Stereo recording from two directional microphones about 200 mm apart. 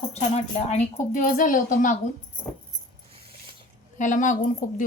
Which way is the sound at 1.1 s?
40° left (ahead or behind).